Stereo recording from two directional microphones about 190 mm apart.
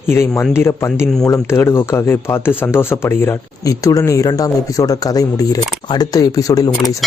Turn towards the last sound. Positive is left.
turn(degrees=20)  # may be behind; listen again after turning